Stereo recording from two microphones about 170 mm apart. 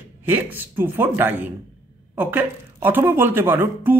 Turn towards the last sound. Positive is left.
turn(degrees=-15)  # may be behind; listen again after turning